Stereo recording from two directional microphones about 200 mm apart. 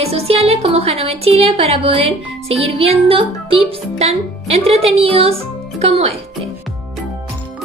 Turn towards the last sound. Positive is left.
turn(degrees=-30)  # may be behind; listen again after turning